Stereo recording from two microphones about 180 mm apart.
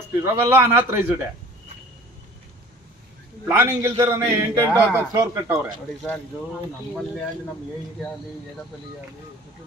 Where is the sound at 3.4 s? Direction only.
10° right (ahead or behind).